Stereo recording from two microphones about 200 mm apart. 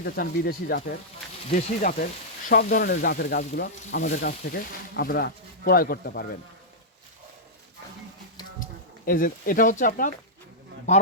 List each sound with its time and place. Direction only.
0.0 s speech: 50° left (ahead or behind)
9.0 s speech: 45° left (ahead or behind)